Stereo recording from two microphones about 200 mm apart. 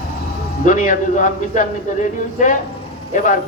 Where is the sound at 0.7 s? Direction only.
40° left (ahead or behind).